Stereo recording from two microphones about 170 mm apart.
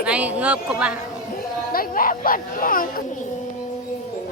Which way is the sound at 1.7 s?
55° left (ahead or behind).